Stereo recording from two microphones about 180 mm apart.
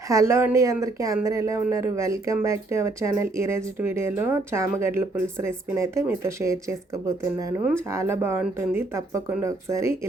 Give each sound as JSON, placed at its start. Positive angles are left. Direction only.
{"t": 0.1, "sound": "speech", "side_deg": -15}